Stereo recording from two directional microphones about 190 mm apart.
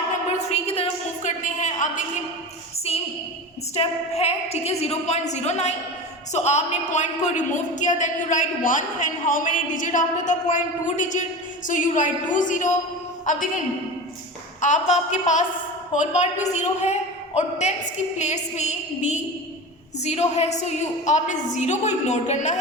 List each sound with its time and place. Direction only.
0.3 s a sound: 35° left (ahead or behind)
2.9 s a woman's voice: 30° left (ahead or behind)
14.6 s a woman's voice: 40° left (ahead or behind)